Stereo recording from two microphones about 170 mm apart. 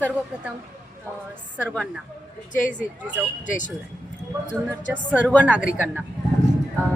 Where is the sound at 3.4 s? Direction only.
50° left (ahead or behind).